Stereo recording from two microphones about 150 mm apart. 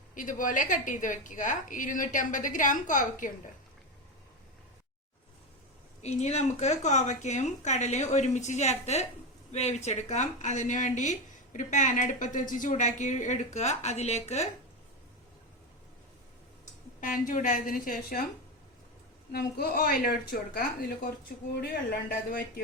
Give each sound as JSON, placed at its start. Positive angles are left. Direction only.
{"t": 0.1, "sound": "a woman's voice", "side_deg": 60}
{"t": 6.0, "sound": "speech", "side_deg": 45}
{"t": 17.0, "sound": "a woman's voice", "side_deg": 60}
{"t": 19.3, "sound": "a woman's voice", "side_deg": 90}